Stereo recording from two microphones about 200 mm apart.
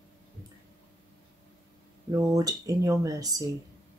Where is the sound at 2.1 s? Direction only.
15° right (ahead or behind).